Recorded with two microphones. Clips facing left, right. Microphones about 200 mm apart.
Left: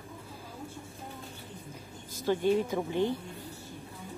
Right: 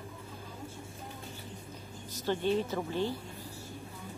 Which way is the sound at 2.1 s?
10° left (ahead or behind).